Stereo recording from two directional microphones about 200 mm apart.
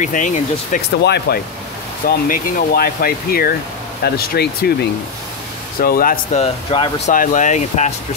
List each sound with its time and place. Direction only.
0.0 s speech: 40° left (ahead or behind)
1.0 s speech: 55° left (ahead or behind)
5.8 s speech: 45° left (ahead or behind)
6.4 s speech: 25° left (ahead or behind)
7.1 s speech: 40° left (ahead or behind)